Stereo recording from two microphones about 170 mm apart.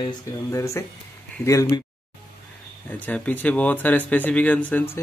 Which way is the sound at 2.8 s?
10° left (ahead or behind).